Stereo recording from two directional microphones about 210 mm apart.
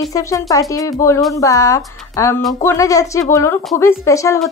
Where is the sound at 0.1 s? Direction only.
15° left (ahead or behind).